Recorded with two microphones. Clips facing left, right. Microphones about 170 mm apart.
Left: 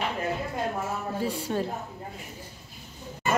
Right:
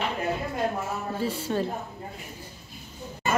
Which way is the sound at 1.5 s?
10° left (ahead or behind).